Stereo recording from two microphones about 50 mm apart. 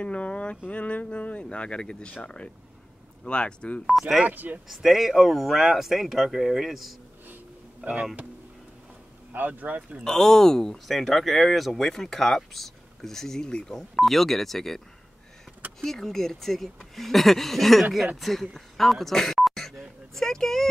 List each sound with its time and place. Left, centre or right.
0.0 s speech: left
4.3 s speech: right
4.6 s speech: centre
7.8 s speech: right
9.3 s speech: right
10.0 s speech: centre
15.8 s speech: centre